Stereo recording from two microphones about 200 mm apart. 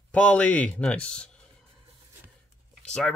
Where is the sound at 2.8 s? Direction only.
5° left (ahead or behind).